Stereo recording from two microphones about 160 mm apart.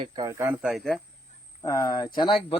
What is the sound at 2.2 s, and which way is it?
Speech, 30° left (ahead or behind).